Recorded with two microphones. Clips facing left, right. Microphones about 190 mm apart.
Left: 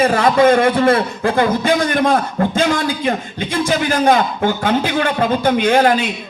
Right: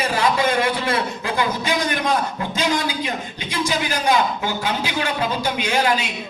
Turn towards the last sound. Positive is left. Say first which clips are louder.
# left 7 dB
turn(degrees=55)  # may be behind; listen again after turning